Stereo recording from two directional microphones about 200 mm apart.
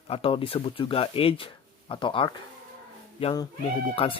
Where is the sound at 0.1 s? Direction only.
25° left (ahead or behind).